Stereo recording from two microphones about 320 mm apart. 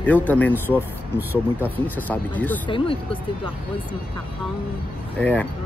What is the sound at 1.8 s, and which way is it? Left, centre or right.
Speech, centre.